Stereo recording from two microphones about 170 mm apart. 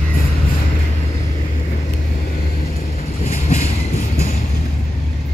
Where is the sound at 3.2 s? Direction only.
40° left (ahead or behind).